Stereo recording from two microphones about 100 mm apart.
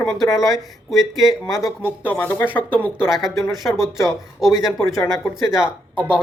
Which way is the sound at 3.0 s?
Centre (ahead or behind).